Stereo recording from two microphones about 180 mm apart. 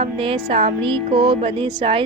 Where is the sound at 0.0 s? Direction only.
30° right (ahead or behind).